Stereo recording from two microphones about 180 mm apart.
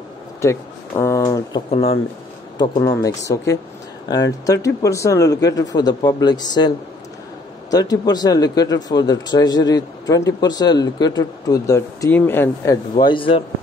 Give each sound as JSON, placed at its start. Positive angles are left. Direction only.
{"t": 0.4, "sound": "speech", "side_deg": 15}
{"t": 1.7, "sound": "speech", "side_deg": 35}
{"t": 2.6, "sound": "speech", "side_deg": 20}
{"t": 7.7, "sound": "speech", "side_deg": 20}
{"t": 12.9, "sound": "speech", "side_deg": 30}